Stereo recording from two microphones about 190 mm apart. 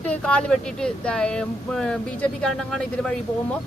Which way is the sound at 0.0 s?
5° left (ahead or behind).